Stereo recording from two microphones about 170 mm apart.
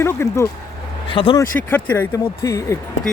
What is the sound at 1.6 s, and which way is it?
Speech, 10° left (ahead or behind).